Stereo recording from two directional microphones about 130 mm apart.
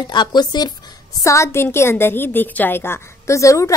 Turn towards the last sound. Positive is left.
turn(degrees=25)  # may be behind; listen again after turning